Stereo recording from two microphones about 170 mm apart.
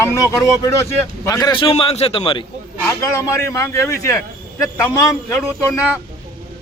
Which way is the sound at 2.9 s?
15° left (ahead or behind).